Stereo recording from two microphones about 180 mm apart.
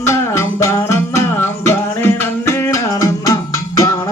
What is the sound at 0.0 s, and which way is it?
Music, 15° left (ahead or behind).